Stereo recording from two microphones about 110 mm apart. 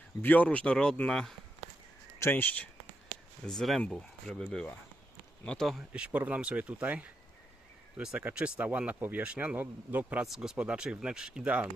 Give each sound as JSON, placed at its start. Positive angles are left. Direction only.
{"t": 0.2, "sound": "speech", "side_deg": 15}
{"t": 2.1, "sound": "speech", "side_deg": 20}
{"t": 3.4, "sound": "speech", "side_deg": 5}
{"t": 5.9, "sound": "speech", "side_deg": -10}
{"t": 10.2, "sound": "speech", "side_deg": -5}